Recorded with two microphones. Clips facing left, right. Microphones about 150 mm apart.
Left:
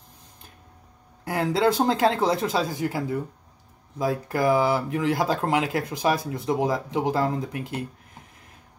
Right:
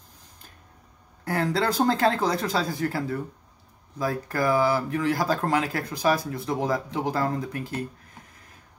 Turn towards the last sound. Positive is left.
turn(degrees=20)  # may be behind; listen again after turning